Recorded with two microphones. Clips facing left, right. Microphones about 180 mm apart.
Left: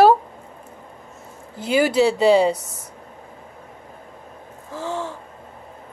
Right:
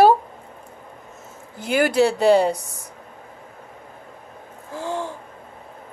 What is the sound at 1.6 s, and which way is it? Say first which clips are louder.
Speech: left 1 dB; 50° right (ahead or behind).